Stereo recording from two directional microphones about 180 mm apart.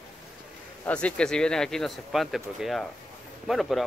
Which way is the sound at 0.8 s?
5° left (ahead or behind).